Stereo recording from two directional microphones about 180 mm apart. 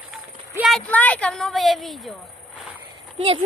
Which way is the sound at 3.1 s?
30° right (ahead or behind).